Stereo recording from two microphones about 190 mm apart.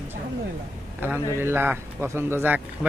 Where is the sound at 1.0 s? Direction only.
10° right (ahead or behind).